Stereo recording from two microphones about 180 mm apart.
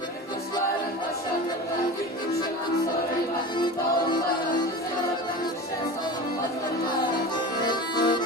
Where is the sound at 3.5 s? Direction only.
25° left (ahead or behind).